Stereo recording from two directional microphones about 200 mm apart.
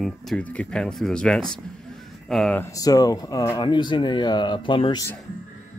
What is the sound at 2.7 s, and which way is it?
Speech, 20° left (ahead or behind).